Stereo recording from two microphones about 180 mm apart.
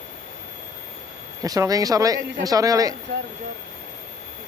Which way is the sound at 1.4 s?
20° right (ahead or behind).